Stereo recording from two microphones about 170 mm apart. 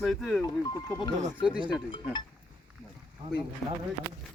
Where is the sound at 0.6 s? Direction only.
20° left (ahead or behind).